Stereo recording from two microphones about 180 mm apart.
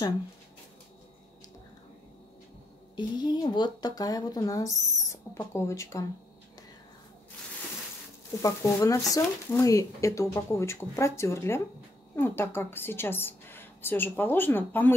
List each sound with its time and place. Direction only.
3.0 s speech: 25° left (ahead or behind)
8.4 s a woman's voice: 20° left (ahead or behind)